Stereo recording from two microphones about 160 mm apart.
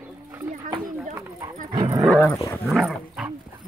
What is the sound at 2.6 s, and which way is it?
Dog, centre (ahead or behind).